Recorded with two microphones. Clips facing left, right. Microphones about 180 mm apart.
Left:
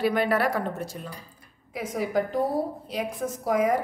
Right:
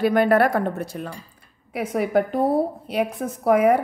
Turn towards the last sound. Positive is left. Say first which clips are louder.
# right 6 dB
turn(degrees=-60)  # may be behind; listen again after turning